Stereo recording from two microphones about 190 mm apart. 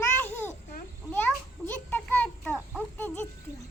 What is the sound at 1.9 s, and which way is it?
A child's voice, 10° left (ahead or behind).